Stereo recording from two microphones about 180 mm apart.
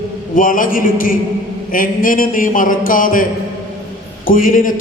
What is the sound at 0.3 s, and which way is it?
Speech, 50° left (ahead or behind).